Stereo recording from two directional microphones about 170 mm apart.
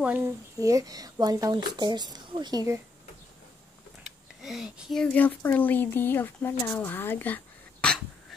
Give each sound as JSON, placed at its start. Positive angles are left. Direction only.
{"t": 0.0, "sound": "speech", "side_deg": -10}
{"t": 4.0, "sound": "speech", "side_deg": 0}